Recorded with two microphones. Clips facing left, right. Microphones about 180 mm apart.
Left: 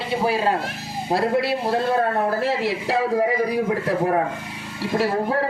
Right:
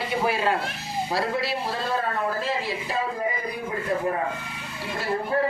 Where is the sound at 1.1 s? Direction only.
55° left (ahead or behind); by 3.2 s 80° left.